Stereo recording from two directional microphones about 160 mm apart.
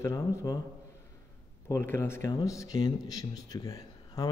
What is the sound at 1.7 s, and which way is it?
A man's voice, 15° left (ahead or behind).